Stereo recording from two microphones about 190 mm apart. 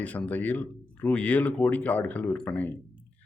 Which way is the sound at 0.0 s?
5° left (ahead or behind).